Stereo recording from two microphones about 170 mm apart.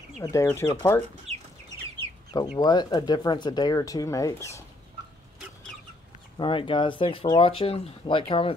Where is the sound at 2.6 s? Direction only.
25° left (ahead or behind).